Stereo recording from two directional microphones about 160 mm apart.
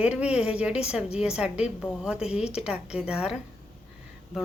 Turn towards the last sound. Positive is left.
turn(degrees=-5)  # may be behind; listen again after turning